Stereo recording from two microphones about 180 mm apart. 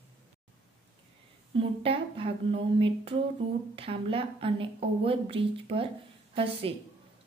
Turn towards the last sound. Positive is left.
turn(degrees=-30)  # may be behind; listen again after turning